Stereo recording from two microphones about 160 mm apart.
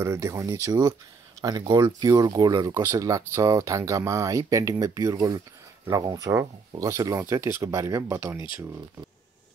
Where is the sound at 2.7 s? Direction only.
15° right (ahead or behind).